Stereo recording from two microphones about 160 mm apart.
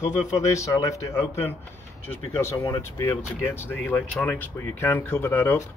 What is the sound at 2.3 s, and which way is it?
Speech, 15° left (ahead or behind).